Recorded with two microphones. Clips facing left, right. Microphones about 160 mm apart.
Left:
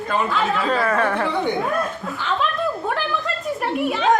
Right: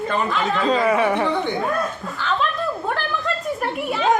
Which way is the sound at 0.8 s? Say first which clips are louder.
Right 2 dB; 10° right (ahead or behind).